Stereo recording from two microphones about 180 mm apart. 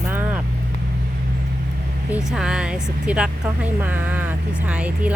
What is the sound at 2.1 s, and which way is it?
Speech, 5° right (ahead or behind).